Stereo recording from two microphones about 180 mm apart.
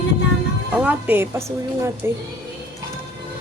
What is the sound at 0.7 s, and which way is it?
A woman's voice, 10° right (ahead or behind).